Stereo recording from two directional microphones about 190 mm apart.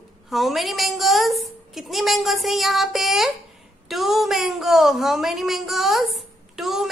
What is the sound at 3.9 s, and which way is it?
A woman's voice, centre (ahead or behind).